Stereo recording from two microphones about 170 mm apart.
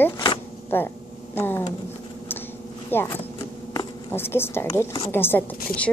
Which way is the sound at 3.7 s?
15° left (ahead or behind).